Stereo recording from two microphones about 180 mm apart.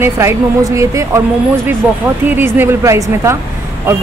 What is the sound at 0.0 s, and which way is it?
Speech, 15° right (ahead or behind).